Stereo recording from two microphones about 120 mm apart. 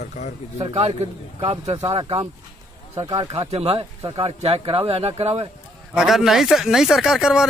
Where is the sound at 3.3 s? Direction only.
55° right (ahead or behind).